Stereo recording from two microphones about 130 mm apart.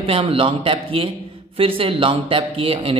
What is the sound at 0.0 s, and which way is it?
Speech, 45° right (ahead or behind).